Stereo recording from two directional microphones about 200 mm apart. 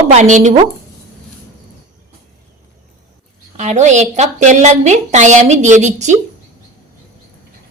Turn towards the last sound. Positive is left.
turn(degrees=-35)  # may be behind; listen again after turning